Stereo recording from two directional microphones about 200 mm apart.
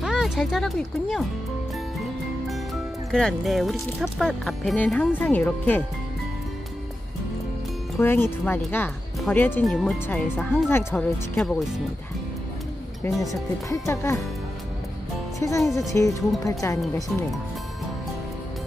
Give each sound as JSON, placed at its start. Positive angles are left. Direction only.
{"t": 0.0, "sound": "speech", "side_deg": 0}
{"t": 2.4, "sound": "music", "side_deg": 0}
{"t": 4.0, "sound": "speech", "side_deg": 0}
{"t": 8.0, "sound": "speech", "side_deg": 10}
{"t": 13.3, "sound": "speech", "side_deg": 15}
{"t": 15.3, "sound": "speech", "side_deg": 15}
{"t": 15.6, "sound": "speech", "side_deg": 0}
{"t": 15.9, "sound": "speech", "side_deg": 15}